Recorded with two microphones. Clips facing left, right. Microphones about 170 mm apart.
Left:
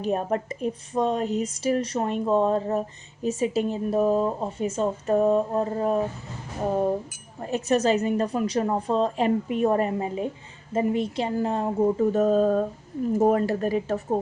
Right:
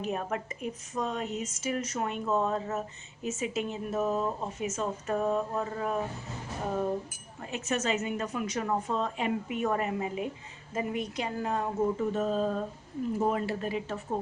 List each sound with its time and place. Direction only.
0.0 s a woman's voice: 35° left (ahead or behind)
7.4 s a woman's voice: 35° left (ahead or behind)